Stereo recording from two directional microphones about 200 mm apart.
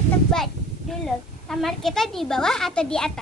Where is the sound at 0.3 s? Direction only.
Centre (ahead or behind).